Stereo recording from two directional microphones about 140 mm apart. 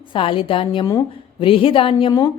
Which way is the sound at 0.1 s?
40° left (ahead or behind).